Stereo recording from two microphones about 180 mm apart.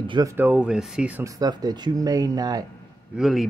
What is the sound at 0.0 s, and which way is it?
Speech, 25° right (ahead or behind).